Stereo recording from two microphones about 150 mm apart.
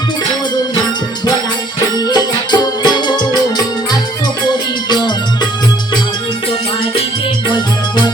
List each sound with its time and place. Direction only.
2.0 s music: 25° left (ahead or behind)
4.9 s music: 30° left (ahead or behind)
7.4 s music: 30° left (ahead or behind)